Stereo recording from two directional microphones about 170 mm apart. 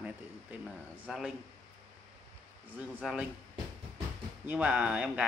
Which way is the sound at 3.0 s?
5° right (ahead or behind).